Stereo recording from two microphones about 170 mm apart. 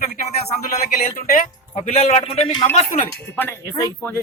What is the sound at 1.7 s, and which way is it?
Speech, 40° left (ahead or behind).